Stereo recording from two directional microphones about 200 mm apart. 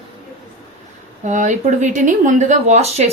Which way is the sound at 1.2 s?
35° right (ahead or behind).